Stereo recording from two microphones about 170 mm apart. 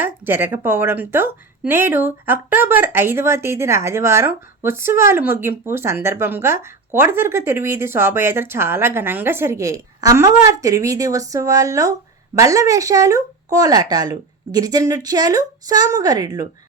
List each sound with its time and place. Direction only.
0.0 s a woman's voice: 10° right (ahead or behind)